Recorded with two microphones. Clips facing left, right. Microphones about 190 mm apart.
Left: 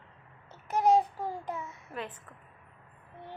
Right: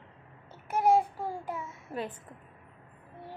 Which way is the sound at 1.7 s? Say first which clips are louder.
Right 3 dB; 40° right (ahead or behind).